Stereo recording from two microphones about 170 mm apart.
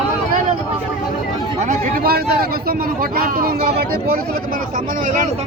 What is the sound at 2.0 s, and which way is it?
Speech, 65° right (ahead or behind).